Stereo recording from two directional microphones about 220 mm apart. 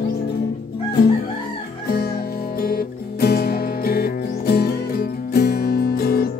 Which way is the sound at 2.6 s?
40° left (ahead or behind).